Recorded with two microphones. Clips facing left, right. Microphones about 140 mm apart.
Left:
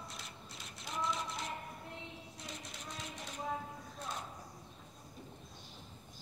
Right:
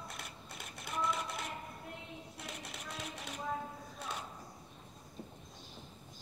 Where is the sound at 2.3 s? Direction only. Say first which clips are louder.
Right 2 dB; 65° right (ahead or behind).